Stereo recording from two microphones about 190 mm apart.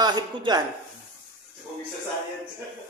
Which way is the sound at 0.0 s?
25° right (ahead or behind).